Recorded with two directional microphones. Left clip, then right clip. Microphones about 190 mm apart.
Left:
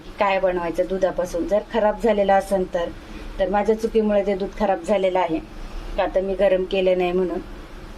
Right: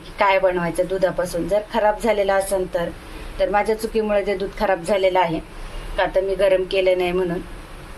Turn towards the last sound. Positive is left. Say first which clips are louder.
# right 1 dB
turn(degrees=15)  # may be behind; listen again after turning